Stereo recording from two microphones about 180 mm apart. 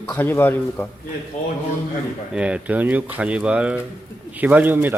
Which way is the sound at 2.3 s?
5° right (ahead or behind).